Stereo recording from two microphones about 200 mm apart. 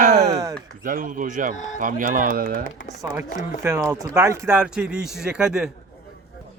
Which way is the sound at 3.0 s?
15° right (ahead or behind).